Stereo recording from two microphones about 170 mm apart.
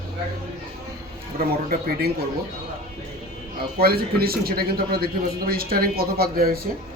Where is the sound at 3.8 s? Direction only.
65° right (ahead or behind).